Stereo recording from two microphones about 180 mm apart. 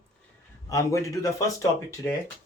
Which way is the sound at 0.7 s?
15° left (ahead or behind).